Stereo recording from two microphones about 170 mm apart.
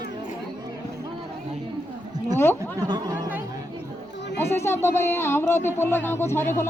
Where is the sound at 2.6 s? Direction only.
25° right (ahead or behind).